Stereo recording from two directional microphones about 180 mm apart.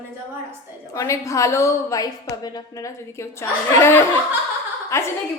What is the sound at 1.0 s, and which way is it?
A woman's voice, 15° left (ahead or behind).